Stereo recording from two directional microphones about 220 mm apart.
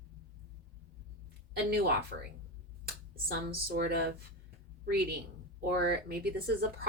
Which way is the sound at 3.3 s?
45° right (ahead or behind).